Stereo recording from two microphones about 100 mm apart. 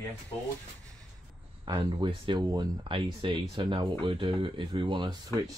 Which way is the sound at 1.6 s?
55° right (ahead or behind).